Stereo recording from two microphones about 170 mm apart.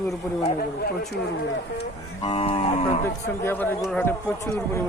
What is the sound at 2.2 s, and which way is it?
Moo, 35° left (ahead or behind).